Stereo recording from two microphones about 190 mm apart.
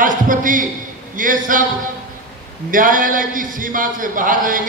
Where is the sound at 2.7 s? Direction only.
45° right (ahead or behind).